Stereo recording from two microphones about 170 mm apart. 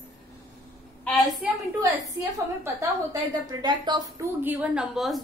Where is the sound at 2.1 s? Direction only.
15° right (ahead or behind).